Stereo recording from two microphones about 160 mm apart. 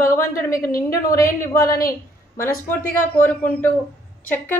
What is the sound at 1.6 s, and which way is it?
Speech, 65° left (ahead or behind).